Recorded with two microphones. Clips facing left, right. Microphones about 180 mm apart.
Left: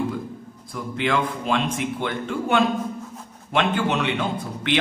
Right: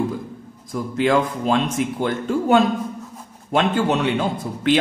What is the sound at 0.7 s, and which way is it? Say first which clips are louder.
Speech: right 5 dB; 40° right (ahead or behind).